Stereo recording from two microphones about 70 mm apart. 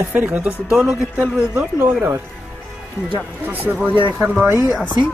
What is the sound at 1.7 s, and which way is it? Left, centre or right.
Speech, right.